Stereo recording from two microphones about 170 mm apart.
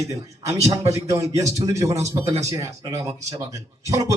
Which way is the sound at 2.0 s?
40° right (ahead or behind).